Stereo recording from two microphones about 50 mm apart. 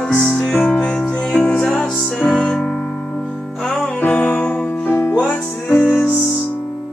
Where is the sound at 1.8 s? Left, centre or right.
Centre.